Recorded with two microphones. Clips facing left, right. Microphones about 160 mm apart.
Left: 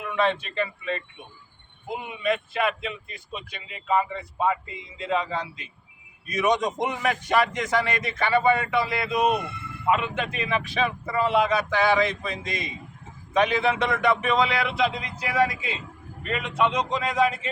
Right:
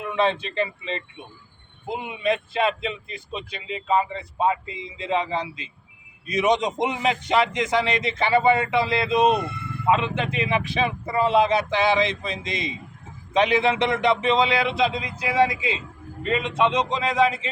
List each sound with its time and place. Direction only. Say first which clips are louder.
0.0 s a man's voice: right 2 dB; 25° right (ahead or behind)
4.6 s speech: right 5 dB; 90° right
4.9 s a man's voice: right 2 dB; 25° right (ahead or behind)